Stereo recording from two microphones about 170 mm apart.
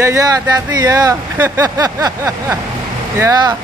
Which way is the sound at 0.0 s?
20° right (ahead or behind).